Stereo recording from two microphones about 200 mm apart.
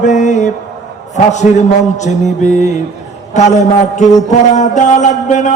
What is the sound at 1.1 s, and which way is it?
A man's voice, 35° left (ahead or behind).